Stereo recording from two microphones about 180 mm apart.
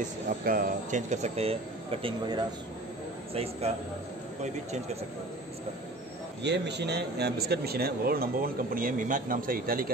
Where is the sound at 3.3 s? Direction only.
35° right (ahead or behind).